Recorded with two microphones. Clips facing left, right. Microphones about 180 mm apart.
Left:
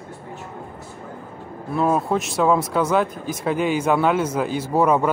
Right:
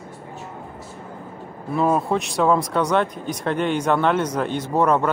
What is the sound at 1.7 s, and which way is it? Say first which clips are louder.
Speech: even; centre (ahead or behind).